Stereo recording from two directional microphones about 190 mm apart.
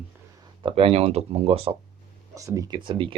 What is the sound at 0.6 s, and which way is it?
Speech, 30° right (ahead or behind).